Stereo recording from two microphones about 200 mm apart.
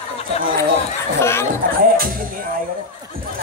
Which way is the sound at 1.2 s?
10° left (ahead or behind).